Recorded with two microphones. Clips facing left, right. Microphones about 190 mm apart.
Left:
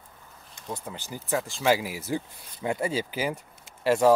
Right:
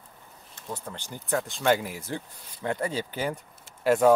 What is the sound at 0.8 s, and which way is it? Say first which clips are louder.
Speech: left 1 dB; 5° left (ahead or behind).